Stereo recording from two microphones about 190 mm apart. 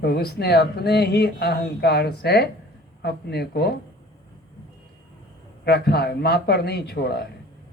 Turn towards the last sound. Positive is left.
turn(degrees=60)  # may be behind; listen again after turning